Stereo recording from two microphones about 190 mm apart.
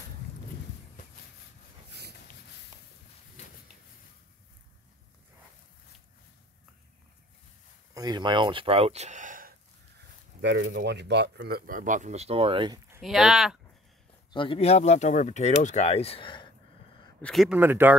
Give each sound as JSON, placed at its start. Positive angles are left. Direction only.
{"t": 7.9, "sound": "speech", "side_deg": -20}
{"t": 10.4, "sound": "speech", "side_deg": -65}
{"t": 13.0, "sound": "speech", "side_deg": 0}
{"t": 14.3, "sound": "speech", "side_deg": 25}
{"t": 17.2, "sound": "speech", "side_deg": 0}
{"t": 17.6, "sound": "speech", "side_deg": -10}